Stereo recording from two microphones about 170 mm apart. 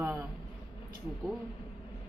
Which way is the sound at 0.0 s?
10° right (ahead or behind).